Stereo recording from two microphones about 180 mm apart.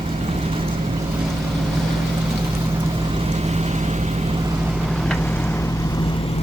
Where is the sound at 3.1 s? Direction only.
30° right (ahead or behind).